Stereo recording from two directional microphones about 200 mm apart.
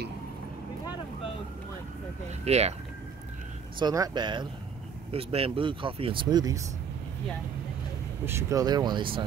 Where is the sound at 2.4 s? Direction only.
30° right (ahead or behind).